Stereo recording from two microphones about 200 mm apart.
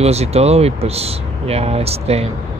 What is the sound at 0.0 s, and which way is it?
Speech, 30° right (ahead or behind).